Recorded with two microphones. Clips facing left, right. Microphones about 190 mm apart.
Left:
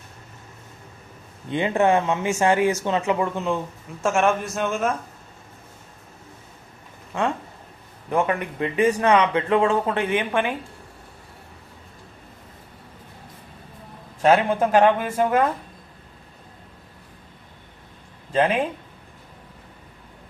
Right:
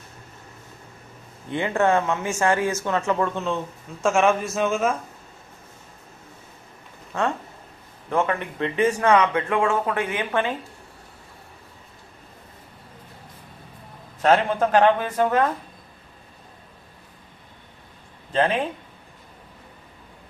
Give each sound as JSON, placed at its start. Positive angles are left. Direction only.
{"t": 1.5, "sound": "a man's voice", "side_deg": 20}
{"t": 4.0, "sound": "a man's voice", "side_deg": 0}
{"t": 8.1, "sound": "a man's voice", "side_deg": 15}
{"t": 14.2, "sound": "a man's voice", "side_deg": 10}
{"t": 18.3, "sound": "a man's voice", "side_deg": 10}